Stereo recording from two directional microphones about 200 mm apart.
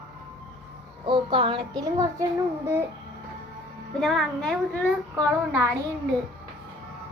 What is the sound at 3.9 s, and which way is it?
Speech, centre (ahead or behind).